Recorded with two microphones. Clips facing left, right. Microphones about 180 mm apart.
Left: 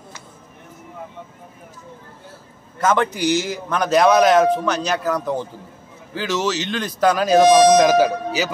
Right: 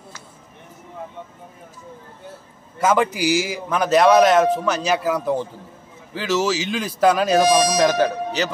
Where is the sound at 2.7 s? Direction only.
5° right (ahead or behind).